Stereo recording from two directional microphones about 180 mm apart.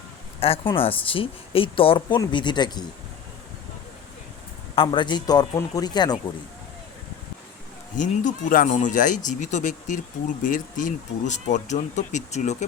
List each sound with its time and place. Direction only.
0.3 s a woman's voice: 35° left (ahead or behind)
4.7 s a woman's voice: 30° left (ahead or behind)
7.9 s speech: 45° left (ahead or behind)